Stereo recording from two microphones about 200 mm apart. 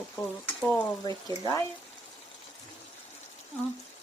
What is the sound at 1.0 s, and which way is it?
Speech, 20° left (ahead or behind).